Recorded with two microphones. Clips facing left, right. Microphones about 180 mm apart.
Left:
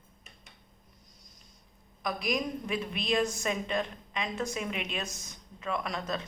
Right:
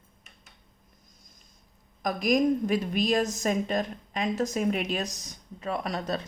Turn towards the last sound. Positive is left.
turn(degrees=-35)  # may be behind; listen again after turning